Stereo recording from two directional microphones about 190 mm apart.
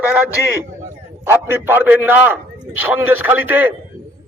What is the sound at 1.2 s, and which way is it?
A man's voice, 10° right (ahead or behind).